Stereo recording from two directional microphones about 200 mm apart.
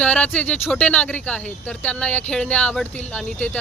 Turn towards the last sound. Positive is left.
turn(degrees=5)  # may be behind; listen again after turning